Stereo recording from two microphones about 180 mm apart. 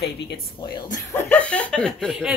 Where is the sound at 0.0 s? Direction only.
70° left (ahead or behind).